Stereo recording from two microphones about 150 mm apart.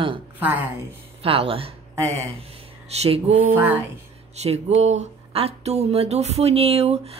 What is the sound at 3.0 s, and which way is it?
Speech, 45° right (ahead or behind).